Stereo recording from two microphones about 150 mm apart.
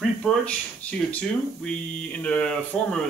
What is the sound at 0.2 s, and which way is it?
Speech, 5° left (ahead or behind).